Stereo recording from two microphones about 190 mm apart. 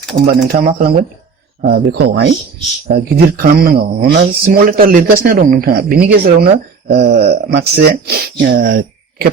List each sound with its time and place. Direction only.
0.5 s speech: 50° right (ahead or behind)